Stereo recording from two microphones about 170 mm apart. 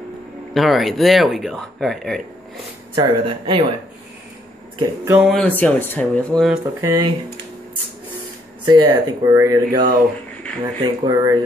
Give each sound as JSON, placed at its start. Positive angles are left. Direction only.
{"t": 0.6, "sound": "speech", "side_deg": 0}
{"t": 3.0, "sound": "speech", "side_deg": -30}
{"t": 4.7, "sound": "a sound", "side_deg": -15}
{"t": 5.2, "sound": "speech", "side_deg": 0}
{"t": 6.6, "sound": "speech", "side_deg": -20}
{"t": 8.6, "sound": "speech", "side_deg": -20}